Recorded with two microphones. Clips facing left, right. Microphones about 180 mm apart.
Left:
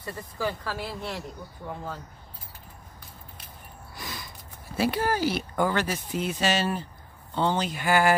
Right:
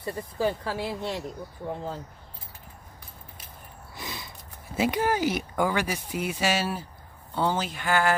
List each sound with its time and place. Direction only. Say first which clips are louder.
0.0 s speech: right 4 dB; 20° right (ahead or behind)
3.9 s gasp: right 1 dB; 20° right (ahead or behind)
4.7 s speech: right 1 dB; 20° right (ahead or behind)
7.8 s speech: left 2 dB; 10° left (ahead or behind)